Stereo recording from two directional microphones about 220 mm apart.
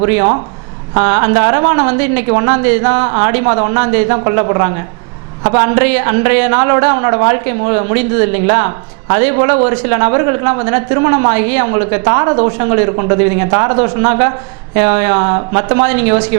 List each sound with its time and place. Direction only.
0.0 s a man's voice: 20° right (ahead or behind)